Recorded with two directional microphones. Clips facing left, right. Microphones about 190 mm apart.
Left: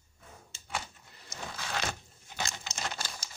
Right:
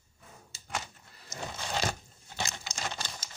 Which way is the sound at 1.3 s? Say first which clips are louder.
Right 2 dB; 25° right (ahead or behind).